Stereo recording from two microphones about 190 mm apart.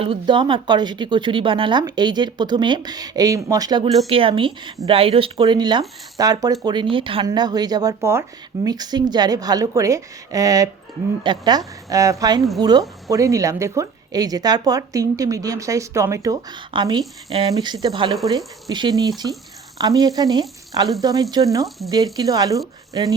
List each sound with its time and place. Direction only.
0.0 s a woman's voice: 25° right (ahead or behind)